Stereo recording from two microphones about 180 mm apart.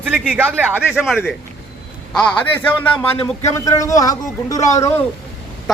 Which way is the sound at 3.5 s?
20° left (ahead or behind).